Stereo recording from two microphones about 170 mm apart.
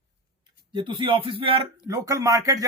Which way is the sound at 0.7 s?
30° right (ahead or behind).